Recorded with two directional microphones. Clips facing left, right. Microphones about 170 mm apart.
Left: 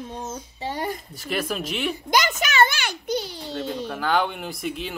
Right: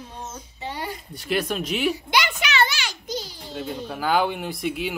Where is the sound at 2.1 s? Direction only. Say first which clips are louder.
Left 2 dB; 45° left (ahead or behind); by 3.5 s 65° left (ahead or behind).